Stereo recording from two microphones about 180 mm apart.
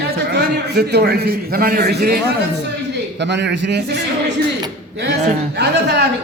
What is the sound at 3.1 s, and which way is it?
Speech, 75° right (ahead or behind).